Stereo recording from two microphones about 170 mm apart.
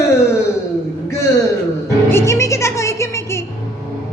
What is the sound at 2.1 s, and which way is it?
Music, 15° left (ahead or behind).